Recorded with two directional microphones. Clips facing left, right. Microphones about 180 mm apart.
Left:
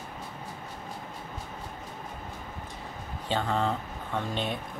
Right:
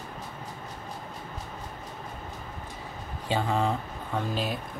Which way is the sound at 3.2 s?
10° right (ahead or behind).